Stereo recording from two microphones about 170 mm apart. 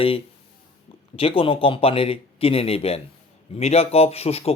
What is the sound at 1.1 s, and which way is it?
Speech, 35° left (ahead or behind).